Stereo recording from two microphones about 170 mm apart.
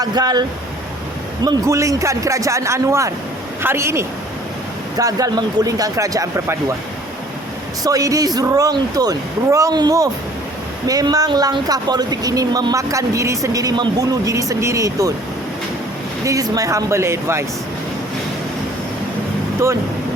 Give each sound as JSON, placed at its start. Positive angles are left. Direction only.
{"t": 0.0, "sound": "speech", "side_deg": -25}
{"t": 1.5, "sound": "a man's voice", "side_deg": -20}
{"t": 7.9, "sound": "speech", "side_deg": -20}
{"t": 16.2, "sound": "speech", "side_deg": -20}